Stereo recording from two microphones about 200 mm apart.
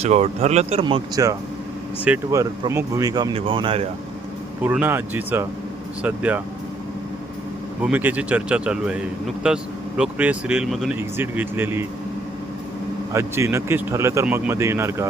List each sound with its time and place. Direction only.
0.0 s speech: 30° right (ahead or behind)
4.6 s speech: 10° right (ahead or behind)
7.8 s speech: 5° right (ahead or behind)
13.1 s speech: 15° right (ahead or behind)